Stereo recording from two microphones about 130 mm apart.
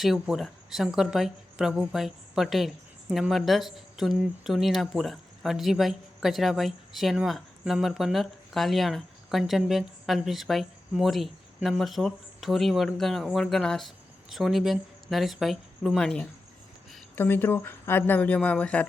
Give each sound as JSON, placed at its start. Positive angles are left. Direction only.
{"t": 0.0, "sound": "speech", "side_deg": 0}
{"t": 17.2, "sound": "speech", "side_deg": 15}